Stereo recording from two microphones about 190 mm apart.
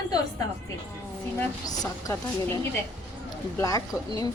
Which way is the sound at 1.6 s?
20° left (ahead or behind).